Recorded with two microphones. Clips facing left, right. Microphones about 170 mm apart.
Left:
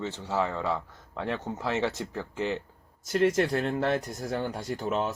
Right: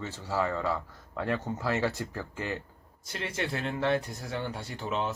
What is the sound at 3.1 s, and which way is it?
Speech, 45° left (ahead or behind).